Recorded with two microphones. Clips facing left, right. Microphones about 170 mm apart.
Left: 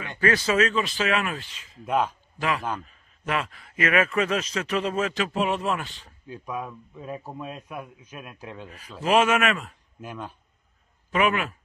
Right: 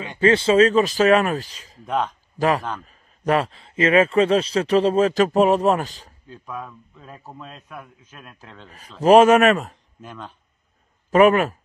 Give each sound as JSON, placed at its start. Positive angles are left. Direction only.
{"t": 0.2, "sound": "a man's voice", "side_deg": -25}
{"t": 1.9, "sound": "a man's voice", "side_deg": 5}
{"t": 2.3, "sound": "a man's voice", "side_deg": -40}
{"t": 6.2, "sound": "a man's voice", "side_deg": 10}
{"t": 9.0, "sound": "a man's voice", "side_deg": -40}
{"t": 9.9, "sound": "a man's voice", "side_deg": 10}
{"t": 11.1, "sound": "speech", "side_deg": -40}